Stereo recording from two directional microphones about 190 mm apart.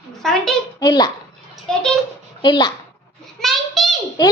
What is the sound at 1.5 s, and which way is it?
Speech, 5° left (ahead or behind).